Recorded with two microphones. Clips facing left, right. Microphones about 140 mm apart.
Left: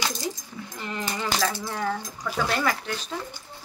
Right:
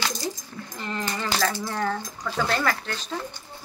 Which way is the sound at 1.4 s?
Centre (ahead or behind).